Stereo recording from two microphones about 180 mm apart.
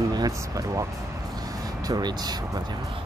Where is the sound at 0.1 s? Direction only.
20° right (ahead or behind).